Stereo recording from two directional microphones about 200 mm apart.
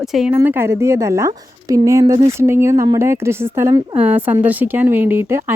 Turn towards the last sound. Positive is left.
turn(degrees=-10)  # may be behind; listen again after turning